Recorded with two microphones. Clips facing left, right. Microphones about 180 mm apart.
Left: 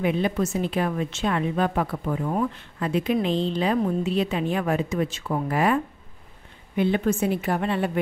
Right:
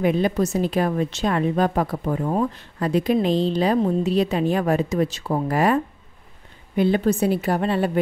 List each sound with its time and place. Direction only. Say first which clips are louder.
0.0 s a woman's voice: right 3 dB; 40° right (ahead or behind)
6.8 s a woman's voice: right 3 dB; 35° right (ahead or behind)